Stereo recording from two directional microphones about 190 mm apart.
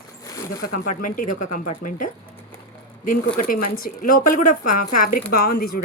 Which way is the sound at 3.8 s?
45° left (ahead or behind).